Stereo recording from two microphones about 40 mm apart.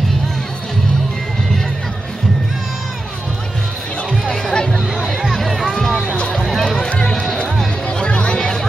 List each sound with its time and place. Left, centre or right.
4.1 s music: centre
5.3 s music: centre
6.3 s a sound: centre
8.0 s music: left
8.4 s music: centre